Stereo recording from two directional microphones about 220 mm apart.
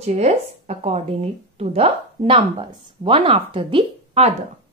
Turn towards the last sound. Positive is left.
turn(degrees=-25)  # may be behind; listen again after turning